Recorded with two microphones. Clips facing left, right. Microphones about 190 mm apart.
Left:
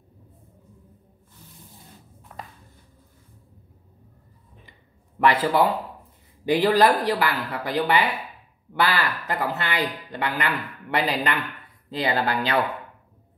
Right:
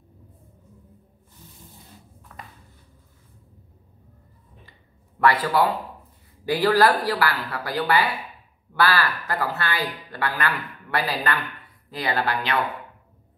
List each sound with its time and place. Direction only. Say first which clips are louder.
5.2 s a man's voice: left 1 dB; 25° left (ahead or behind)